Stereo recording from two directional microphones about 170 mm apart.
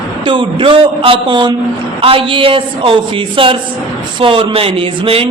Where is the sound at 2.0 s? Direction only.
30° right (ahead or behind).